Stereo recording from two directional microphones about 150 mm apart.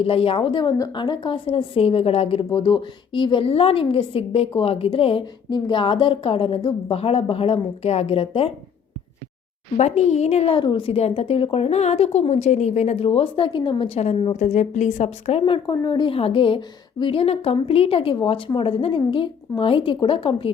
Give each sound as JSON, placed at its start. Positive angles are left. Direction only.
{"t": 0.0, "sound": "a woman's voice", "side_deg": 40}
{"t": 9.7, "sound": "a woman's voice", "side_deg": 45}